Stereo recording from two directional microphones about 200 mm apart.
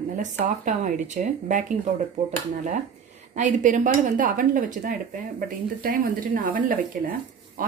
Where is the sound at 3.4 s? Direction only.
40° right (ahead or behind).